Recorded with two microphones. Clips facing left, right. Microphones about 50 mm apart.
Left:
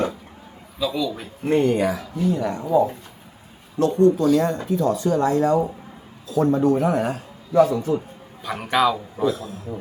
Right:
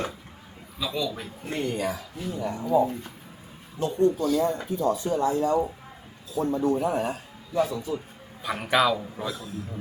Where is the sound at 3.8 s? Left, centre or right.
Left.